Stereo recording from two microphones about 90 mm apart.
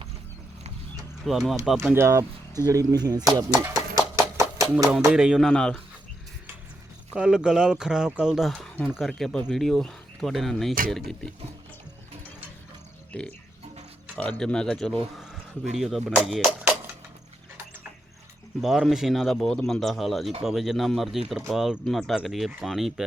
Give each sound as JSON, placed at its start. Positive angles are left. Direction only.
{"t": 1.2, "sound": "speech", "side_deg": 0}
{"t": 1.8, "sound": "speech", "side_deg": -20}
{"t": 2.0, "sound": "speech", "side_deg": -35}
{"t": 3.8, "sound": "a sound", "side_deg": -40}
{"t": 5.0, "sound": "speech", "side_deg": -10}
{"t": 5.4, "sound": "speech", "side_deg": 5}
{"t": 7.1, "sound": "speech", "side_deg": -10}
{"t": 13.1, "sound": "speech", "side_deg": 15}
{"t": 15.2, "sound": "speech", "side_deg": -5}
{"t": 18.6, "sound": "speech", "side_deg": -5}